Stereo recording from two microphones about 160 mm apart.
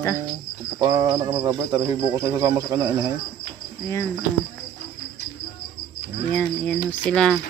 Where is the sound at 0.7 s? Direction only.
25° right (ahead or behind).